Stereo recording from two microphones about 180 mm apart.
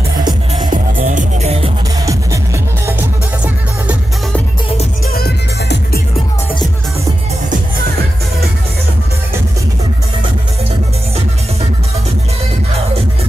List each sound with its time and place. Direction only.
0.7 s music: 45° right (ahead or behind)
2.0 s music: 15° right (ahead or behind)
5.1 s music: 60° left (ahead or behind)
6.1 s music: 25° left (ahead or behind)